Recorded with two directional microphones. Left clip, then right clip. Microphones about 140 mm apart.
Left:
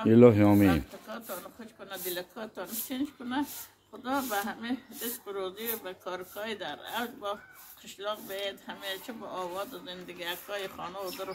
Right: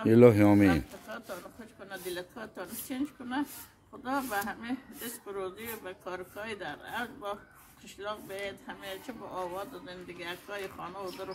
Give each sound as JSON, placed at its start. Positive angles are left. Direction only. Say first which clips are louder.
{"t": 0.0, "sound": "a woman's voice", "louder": "left 1 dB", "side_deg": -15}